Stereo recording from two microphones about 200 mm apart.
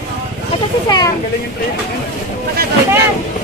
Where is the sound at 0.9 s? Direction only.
20° left (ahead or behind).